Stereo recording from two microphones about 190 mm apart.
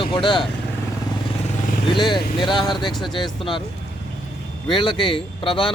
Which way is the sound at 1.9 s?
25° left (ahead or behind).